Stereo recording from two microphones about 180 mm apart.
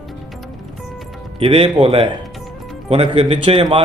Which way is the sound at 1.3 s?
30° right (ahead or behind).